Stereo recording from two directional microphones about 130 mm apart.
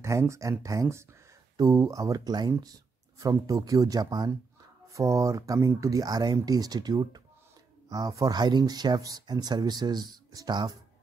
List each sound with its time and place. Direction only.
0.0 s speech: 20° right (ahead or behind)